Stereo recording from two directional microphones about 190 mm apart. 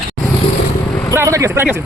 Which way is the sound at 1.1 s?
15° right (ahead or behind).